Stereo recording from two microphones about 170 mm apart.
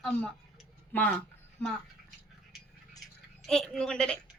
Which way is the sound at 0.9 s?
10° left (ahead or behind).